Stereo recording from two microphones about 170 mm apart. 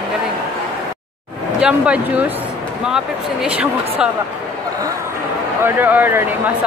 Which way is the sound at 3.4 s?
5° right (ahead or behind).